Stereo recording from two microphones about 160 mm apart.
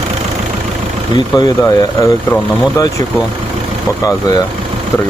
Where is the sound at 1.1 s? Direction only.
25° left (ahead or behind).